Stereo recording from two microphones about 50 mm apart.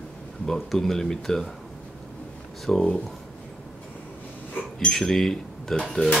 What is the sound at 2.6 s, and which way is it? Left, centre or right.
Speech, centre.